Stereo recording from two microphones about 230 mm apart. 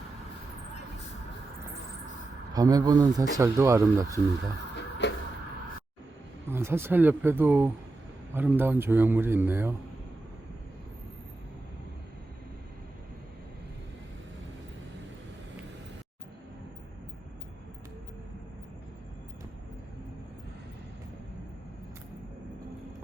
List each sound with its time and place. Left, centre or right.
2.5 s speech: centre
5.0 s vehicle: left
6.5 s speech: centre